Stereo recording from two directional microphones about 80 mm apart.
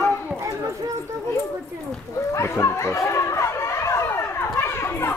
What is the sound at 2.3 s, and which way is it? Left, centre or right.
Chatter, left.